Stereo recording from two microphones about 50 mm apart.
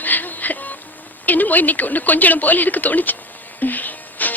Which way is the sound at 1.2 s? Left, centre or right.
Left.